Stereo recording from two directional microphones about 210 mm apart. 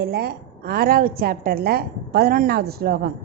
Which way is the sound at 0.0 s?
50° right (ahead or behind).